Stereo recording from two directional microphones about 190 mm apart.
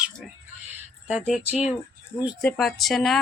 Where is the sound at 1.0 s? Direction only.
5° right (ahead or behind).